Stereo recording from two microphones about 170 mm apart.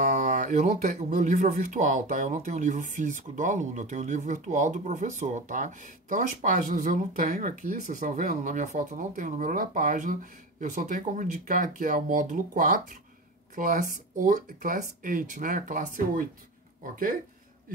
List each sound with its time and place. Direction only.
0.0 s speech: 50° right (ahead or behind)